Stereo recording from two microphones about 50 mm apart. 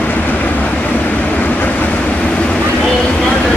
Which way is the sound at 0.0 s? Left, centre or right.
Left.